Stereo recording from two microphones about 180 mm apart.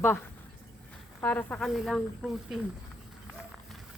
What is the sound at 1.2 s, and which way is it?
Speech, 10° left (ahead or behind).